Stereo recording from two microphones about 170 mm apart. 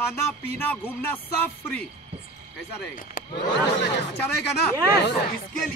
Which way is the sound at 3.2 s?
55° left (ahead or behind).